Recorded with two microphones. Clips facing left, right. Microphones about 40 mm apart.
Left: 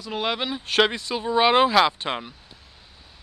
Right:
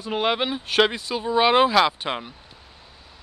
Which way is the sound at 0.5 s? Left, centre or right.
Centre.